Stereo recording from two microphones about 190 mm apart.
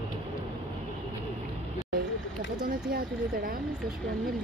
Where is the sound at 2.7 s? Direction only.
50° right (ahead or behind).